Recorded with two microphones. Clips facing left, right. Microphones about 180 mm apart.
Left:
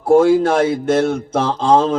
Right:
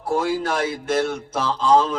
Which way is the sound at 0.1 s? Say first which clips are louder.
Left 11 dB; 55° left (ahead or behind).